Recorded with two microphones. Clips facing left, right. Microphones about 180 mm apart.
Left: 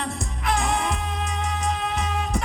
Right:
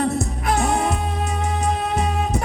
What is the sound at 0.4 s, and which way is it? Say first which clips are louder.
Music: right 3 dB; 40° right (ahead or behind).